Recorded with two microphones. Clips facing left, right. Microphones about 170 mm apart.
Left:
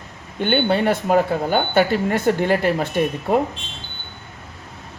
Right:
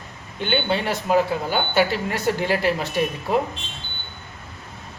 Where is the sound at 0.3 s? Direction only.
50° left (ahead or behind).